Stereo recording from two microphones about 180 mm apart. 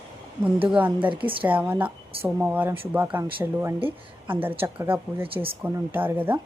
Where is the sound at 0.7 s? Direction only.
10° right (ahead or behind).